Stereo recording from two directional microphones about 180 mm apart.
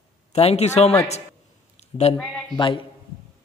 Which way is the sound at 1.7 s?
35° left (ahead or behind).